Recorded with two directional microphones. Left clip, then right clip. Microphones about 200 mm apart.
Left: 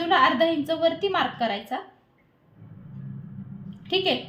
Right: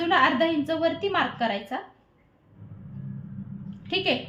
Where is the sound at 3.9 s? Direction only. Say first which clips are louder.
Left 2 dB; 15° left (ahead or behind).